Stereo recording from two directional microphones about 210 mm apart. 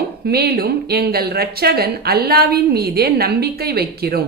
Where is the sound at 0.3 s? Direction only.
45° right (ahead or behind).